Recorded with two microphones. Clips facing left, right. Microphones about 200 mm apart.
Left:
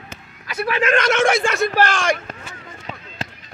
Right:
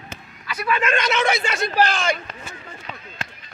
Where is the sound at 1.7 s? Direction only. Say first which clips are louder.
Left 2 dB; 85° left.